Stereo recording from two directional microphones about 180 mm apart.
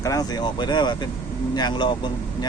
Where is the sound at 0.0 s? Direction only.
20° left (ahead or behind).